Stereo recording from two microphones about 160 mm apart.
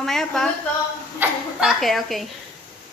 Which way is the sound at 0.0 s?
5° left (ahead or behind).